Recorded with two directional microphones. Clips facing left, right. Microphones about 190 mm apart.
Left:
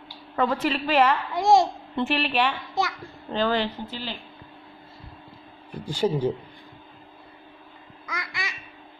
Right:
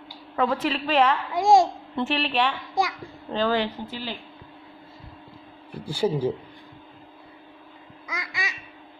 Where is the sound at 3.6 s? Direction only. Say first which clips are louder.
Right 1 dB; 10° right (ahead or behind).